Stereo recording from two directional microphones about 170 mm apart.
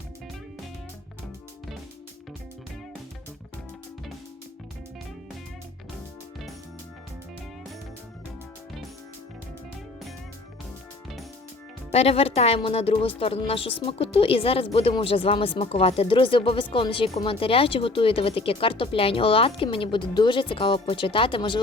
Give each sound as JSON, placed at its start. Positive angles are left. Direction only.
{"t": 11.9, "sound": "speech", "side_deg": 40}